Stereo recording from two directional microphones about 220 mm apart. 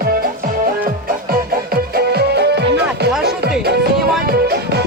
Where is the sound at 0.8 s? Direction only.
40° right (ahead or behind).